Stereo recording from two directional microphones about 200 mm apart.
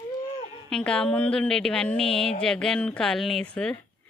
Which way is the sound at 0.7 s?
5° left (ahead or behind).